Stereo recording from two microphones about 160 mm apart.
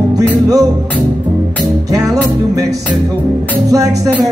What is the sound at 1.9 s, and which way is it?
Music, 20° right (ahead or behind).